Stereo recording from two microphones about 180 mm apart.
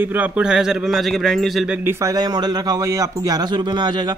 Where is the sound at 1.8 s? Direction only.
15° right (ahead or behind).